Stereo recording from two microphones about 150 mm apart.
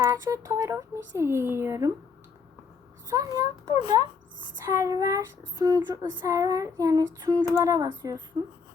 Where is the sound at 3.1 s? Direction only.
25° right (ahead or behind).